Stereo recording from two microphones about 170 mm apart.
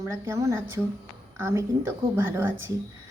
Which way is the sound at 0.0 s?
15° right (ahead or behind).